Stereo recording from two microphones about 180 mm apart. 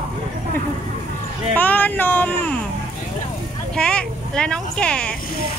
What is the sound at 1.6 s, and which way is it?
Speech, 10° left (ahead or behind).